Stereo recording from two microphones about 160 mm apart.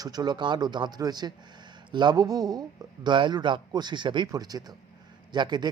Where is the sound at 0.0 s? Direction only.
25° right (ahead or behind).